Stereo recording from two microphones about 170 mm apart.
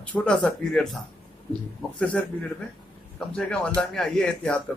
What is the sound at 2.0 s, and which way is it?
Speech, 10° left (ahead or behind).